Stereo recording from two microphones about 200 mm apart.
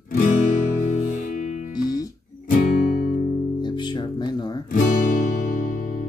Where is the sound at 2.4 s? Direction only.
45° left (ahead or behind).